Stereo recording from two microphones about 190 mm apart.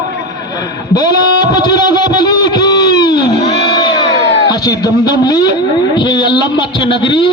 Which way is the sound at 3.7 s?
25° left (ahead or behind).